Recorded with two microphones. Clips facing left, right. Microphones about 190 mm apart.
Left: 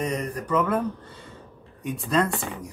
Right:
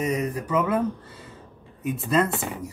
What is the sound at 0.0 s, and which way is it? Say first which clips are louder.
Speech: right 2 dB; 5° right (ahead or behind).